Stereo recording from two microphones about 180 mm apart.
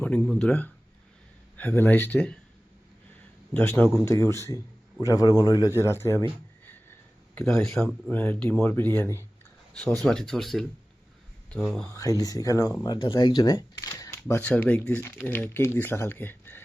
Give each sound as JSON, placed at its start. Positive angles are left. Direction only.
{"t": 0.0, "sound": "speech", "side_deg": 10}
{"t": 3.5, "sound": "a man's voice", "side_deg": 10}
{"t": 7.6, "sound": "speech", "side_deg": 0}
{"t": 10.0, "sound": "speech", "side_deg": 0}
{"t": 11.9, "sound": "a man's voice", "side_deg": 20}